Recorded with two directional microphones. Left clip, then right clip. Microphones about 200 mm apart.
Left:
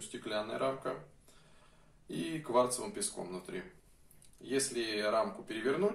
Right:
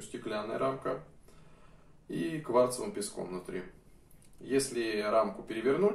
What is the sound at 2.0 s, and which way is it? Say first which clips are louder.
Speech: right 3 dB; 25° left (ahead or behind).